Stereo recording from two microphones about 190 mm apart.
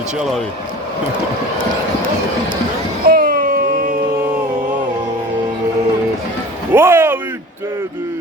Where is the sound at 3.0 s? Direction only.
50° right (ahead or behind).